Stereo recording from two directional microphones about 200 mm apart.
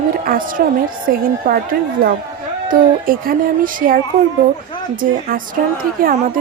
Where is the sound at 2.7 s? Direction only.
45° right (ahead or behind).